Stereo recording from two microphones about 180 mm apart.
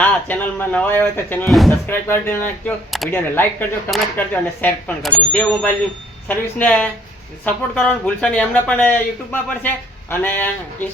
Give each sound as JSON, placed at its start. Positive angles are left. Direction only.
{"t": 0.0, "sound": "speech", "side_deg": 10}